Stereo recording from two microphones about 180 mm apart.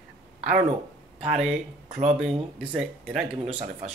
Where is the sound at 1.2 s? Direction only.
5° right (ahead or behind).